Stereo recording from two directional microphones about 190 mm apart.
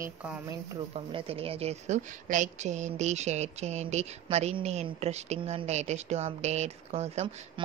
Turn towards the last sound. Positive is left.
turn(degrees=-30)  # may be behind; listen again after turning